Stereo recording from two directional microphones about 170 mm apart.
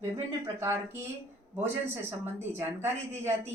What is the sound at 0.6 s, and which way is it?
A woman's voice, 15° right (ahead or behind).